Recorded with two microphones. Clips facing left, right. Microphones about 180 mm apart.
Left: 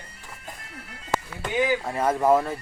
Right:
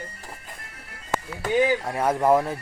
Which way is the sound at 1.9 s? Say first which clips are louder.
Even; 10° right (ahead or behind).